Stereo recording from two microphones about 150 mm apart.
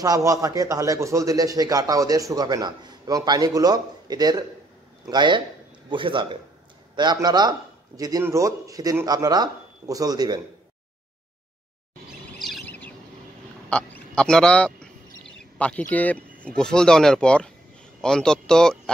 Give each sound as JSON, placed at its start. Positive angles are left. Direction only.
{"t": 0.0, "sound": "a man's voice", "side_deg": -20}
{"t": 12.3, "sound": "chirp", "side_deg": 0}
{"t": 12.6, "sound": "bird", "side_deg": 10}
{"t": 13.7, "sound": "speech", "side_deg": 5}